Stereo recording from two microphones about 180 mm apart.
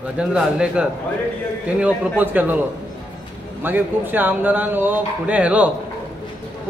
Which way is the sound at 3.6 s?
10° right (ahead or behind).